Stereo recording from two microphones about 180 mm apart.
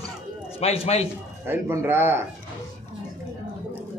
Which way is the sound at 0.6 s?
35° left (ahead or behind).